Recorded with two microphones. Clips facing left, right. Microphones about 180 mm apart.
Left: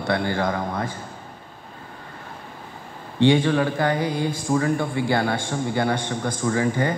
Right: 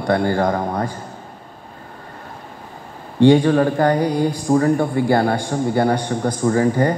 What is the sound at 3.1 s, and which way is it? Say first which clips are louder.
A man's voice: right 6 dB; 40° right (ahead or behind).